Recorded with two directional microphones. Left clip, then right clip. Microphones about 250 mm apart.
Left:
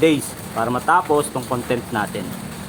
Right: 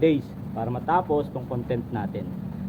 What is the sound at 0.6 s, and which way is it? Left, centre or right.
Speech, centre.